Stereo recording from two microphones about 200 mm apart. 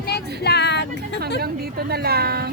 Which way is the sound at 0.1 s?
55° left (ahead or behind).